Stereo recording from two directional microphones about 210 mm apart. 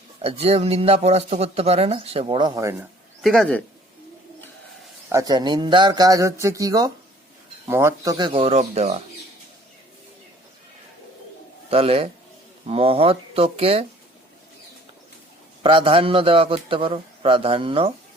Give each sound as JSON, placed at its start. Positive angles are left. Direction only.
{"t": 0.2, "sound": "speech", "side_deg": -30}
{"t": 3.2, "sound": "speech", "side_deg": 0}
{"t": 5.0, "sound": "speech", "side_deg": -15}
{"t": 11.7, "sound": "speech", "side_deg": -25}
{"t": 15.6, "sound": "speech", "side_deg": -25}